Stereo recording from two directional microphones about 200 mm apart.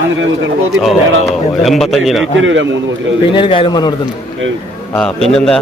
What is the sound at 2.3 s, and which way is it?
Speech, 70° right (ahead or behind).